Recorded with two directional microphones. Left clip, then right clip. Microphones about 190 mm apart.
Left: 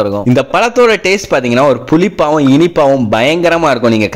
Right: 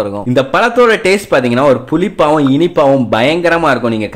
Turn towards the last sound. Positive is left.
turn(degrees=35)  # may be behind; listen again after turning